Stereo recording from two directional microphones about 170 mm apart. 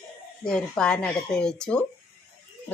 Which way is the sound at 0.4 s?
5° left (ahead or behind).